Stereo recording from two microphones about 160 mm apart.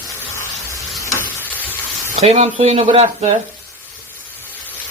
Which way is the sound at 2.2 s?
40° right (ahead or behind).